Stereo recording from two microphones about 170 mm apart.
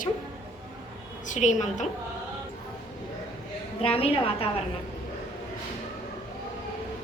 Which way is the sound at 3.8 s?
35° left (ahead or behind).